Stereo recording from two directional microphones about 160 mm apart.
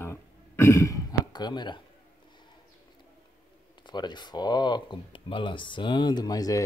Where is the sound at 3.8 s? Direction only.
30° left (ahead or behind).